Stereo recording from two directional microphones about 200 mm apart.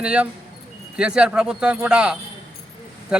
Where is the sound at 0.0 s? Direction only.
5° right (ahead or behind).